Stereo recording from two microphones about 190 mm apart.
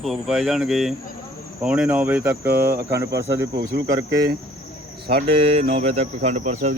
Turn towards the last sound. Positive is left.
turn(degrees=-35)  # may be behind; listen again after turning